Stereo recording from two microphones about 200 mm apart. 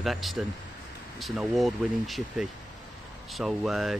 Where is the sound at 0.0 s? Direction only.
Centre (ahead or behind).